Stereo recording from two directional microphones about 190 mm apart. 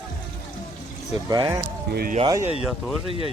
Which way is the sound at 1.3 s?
20° right (ahead or behind).